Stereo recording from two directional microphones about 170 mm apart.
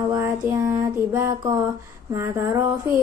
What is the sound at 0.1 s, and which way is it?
Music, 15° right (ahead or behind).